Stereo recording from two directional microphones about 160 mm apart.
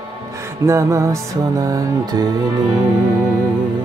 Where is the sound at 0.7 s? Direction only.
20° right (ahead or behind).